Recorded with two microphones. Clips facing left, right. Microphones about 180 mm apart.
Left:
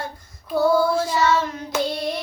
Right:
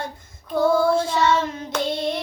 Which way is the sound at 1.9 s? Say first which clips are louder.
Right 2 dB; 25° right (ahead or behind).